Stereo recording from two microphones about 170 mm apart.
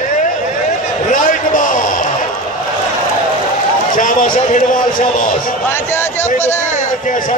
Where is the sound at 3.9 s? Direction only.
50° left (ahead or behind).